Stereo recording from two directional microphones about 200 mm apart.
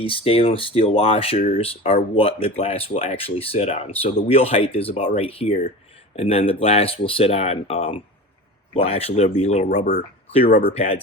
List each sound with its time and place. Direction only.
0.0 s speech: 25° left (ahead or behind); by 10.0 s 45° left (ahead or behind)
10.6 s speech: 30° left (ahead or behind)